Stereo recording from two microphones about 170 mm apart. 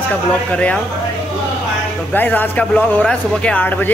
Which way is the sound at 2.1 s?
10° left (ahead or behind).